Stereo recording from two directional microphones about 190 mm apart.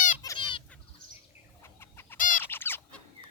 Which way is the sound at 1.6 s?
10° left (ahead or behind).